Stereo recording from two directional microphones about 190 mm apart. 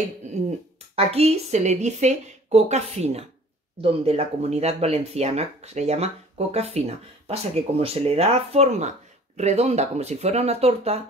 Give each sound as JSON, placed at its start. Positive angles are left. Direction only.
{"t": 0.9, "sound": "speech", "side_deg": -30}